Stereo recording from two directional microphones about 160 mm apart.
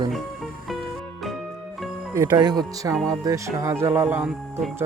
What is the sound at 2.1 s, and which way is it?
Speech, 20° right (ahead or behind).